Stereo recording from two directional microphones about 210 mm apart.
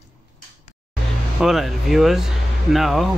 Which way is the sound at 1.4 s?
Centre (ahead or behind).